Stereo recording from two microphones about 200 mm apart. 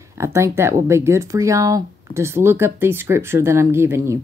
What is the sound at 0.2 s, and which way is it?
Speech, 15° right (ahead or behind).